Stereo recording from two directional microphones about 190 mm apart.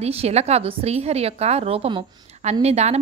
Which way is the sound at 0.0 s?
35° right (ahead or behind).